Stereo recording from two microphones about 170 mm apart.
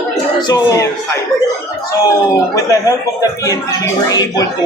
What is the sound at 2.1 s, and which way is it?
Speech, 20° left (ahead or behind).